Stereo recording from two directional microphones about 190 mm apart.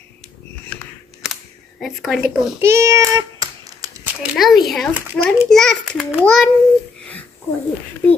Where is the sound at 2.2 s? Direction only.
10° right (ahead or behind).